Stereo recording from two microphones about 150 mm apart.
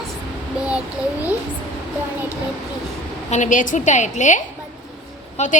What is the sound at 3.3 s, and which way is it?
A woman's voice, 60° left (ahead or behind).